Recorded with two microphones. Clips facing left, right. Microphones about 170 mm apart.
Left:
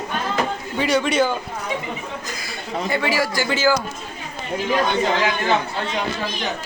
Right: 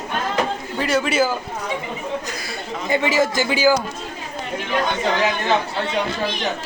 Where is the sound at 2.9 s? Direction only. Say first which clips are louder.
Right 4 dB; 20° right (ahead or behind).